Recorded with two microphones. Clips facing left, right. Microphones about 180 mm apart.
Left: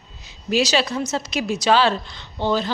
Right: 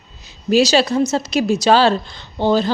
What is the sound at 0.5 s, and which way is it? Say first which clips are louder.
A woman's voice: right 6 dB; 35° right (ahead or behind).